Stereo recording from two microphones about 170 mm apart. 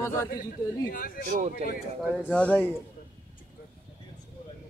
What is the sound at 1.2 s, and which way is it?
Speech, 50° right (ahead or behind).